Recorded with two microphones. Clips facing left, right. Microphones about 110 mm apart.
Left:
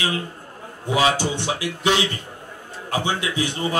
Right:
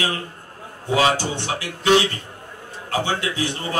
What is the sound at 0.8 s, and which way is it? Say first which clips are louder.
A man's voice: right 1 dB; 15° left (ahead or behind).